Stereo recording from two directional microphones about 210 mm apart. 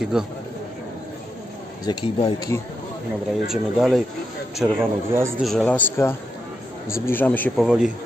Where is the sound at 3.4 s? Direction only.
Centre (ahead or behind).